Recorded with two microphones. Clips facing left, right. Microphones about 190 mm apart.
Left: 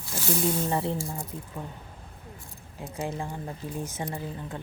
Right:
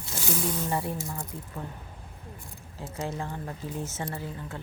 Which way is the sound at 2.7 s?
15° left (ahead or behind).